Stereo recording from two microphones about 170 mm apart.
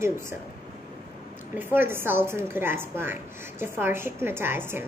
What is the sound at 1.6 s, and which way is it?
A woman's voice, 10° right (ahead or behind).